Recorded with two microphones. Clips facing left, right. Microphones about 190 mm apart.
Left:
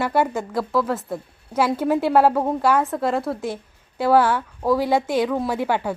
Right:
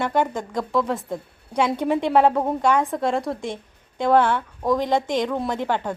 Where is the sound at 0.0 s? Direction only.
5° left (ahead or behind).